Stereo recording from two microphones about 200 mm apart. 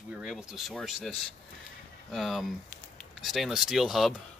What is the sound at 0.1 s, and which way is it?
Speech, 5° right (ahead or behind).